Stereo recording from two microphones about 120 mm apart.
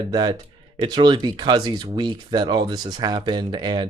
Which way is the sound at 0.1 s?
35° right (ahead or behind).